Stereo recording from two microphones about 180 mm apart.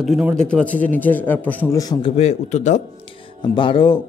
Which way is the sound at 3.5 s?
25° left (ahead or behind).